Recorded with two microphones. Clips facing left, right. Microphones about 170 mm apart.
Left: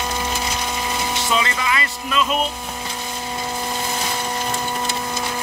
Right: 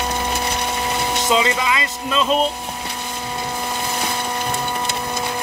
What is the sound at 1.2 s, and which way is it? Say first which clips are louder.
Speech: right 4 dB; 20° right (ahead or behind).